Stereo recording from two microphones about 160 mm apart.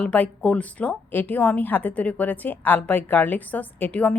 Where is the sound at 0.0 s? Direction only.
10° left (ahead or behind).